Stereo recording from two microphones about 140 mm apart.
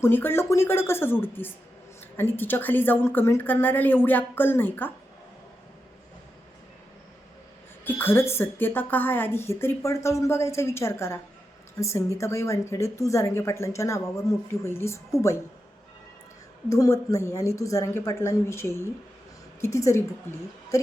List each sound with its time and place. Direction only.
0.0 s a woman's voice: 15° left (ahead or behind)
7.9 s a woman's voice: 15° left (ahead or behind)
16.6 s a woman's voice: 25° left (ahead or behind)